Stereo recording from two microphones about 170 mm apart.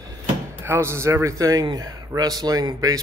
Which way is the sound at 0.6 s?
15° right (ahead or behind).